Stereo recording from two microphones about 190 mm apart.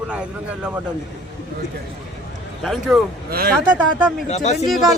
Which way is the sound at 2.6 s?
Centre (ahead or behind).